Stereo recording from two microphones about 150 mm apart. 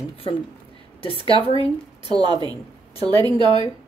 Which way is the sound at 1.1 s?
30° right (ahead or behind).